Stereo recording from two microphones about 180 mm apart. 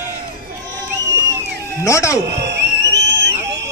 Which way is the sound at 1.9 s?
15° left (ahead or behind).